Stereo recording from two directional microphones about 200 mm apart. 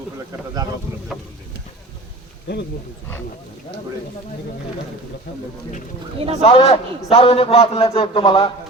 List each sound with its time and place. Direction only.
2.5 s speech: 55° left (ahead or behind)
6.1 s speech: 30° right (ahead or behind)
6.4 s a man's voice: 30° left (ahead or behind)